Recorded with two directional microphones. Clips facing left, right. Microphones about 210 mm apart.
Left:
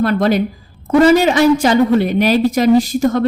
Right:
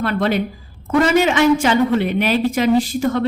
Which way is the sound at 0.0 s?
40° left (ahead or behind).